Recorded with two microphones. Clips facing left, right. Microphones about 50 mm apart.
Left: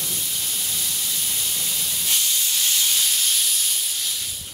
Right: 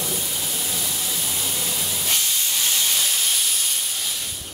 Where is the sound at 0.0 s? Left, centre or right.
Centre.